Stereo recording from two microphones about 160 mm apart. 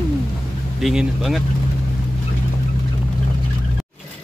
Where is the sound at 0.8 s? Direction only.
Centre (ahead or behind).